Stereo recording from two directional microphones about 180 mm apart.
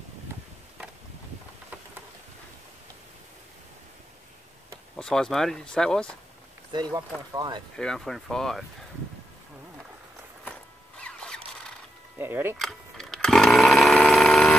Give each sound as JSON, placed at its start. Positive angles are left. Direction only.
{"t": 4.9, "sound": "speech", "side_deg": 5}
{"t": 6.7, "sound": "speech", "side_deg": -20}
{"t": 7.7, "sound": "speech", "side_deg": 5}
{"t": 11.0, "sound": "zipper", "side_deg": 5}
{"t": 12.2, "sound": "speech", "side_deg": -10}
{"t": 12.5, "sound": "a sound", "side_deg": 0}